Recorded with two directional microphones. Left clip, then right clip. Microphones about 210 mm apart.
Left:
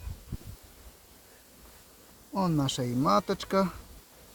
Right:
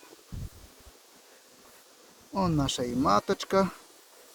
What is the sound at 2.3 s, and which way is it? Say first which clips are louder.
Speech: right 1 dB; 5° right (ahead or behind).